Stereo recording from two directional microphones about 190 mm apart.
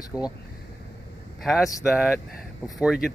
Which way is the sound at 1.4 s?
Centre (ahead or behind).